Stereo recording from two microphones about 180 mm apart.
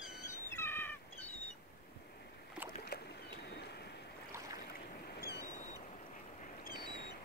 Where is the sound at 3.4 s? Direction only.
65° left (ahead or behind).